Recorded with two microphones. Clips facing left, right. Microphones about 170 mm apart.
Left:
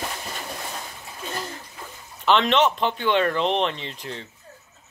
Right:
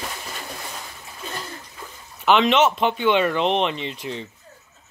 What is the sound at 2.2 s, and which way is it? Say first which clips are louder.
Speech: right 2 dB; 5° right (ahead or behind).